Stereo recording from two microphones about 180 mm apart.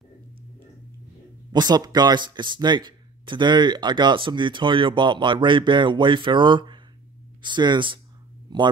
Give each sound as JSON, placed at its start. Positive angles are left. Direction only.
{"t": 1.5, "sound": "speech", "side_deg": -25}